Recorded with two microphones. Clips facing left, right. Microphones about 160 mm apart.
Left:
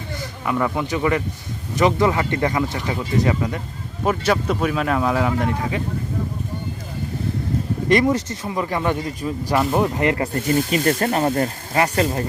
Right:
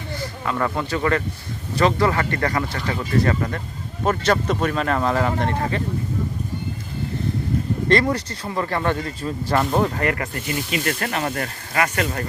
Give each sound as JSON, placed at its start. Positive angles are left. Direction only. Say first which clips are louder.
{"t": 0.4, "sound": "speech", "louder": "left 2 dB", "side_deg": 10}
{"t": 7.9, "sound": "speech", "louder": "left 3 dB", "side_deg": 15}
{"t": 9.6, "sound": "speech", "louder": "left 1 dB", "side_deg": 0}
{"t": 9.8, "sound": "speech", "louder": "left 2 dB", "side_deg": 20}
{"t": 10.5, "sound": "speech", "louder": "left 6 dB", "side_deg": 40}